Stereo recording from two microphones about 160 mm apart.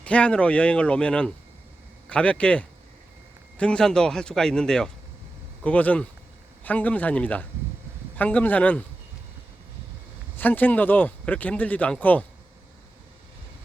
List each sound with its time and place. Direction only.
0.0 s a man's voice: 5° left (ahead or behind)
10.3 s speech: 10° left (ahead or behind)